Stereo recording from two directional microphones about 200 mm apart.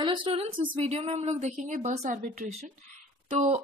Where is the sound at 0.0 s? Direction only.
25° right (ahead or behind).